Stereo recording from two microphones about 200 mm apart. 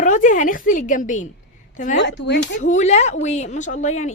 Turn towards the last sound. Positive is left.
turn(degrees=35)  # may be behind; listen again after turning